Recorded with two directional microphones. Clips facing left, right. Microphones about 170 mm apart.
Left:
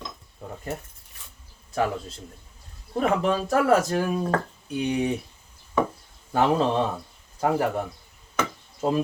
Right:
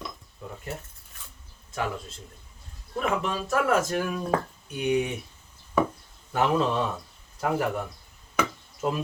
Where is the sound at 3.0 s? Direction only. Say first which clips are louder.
Left 5 dB; 35° left (ahead or behind).